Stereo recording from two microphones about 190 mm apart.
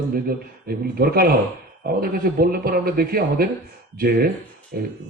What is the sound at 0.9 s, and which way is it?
Speech, 55° right (ahead or behind).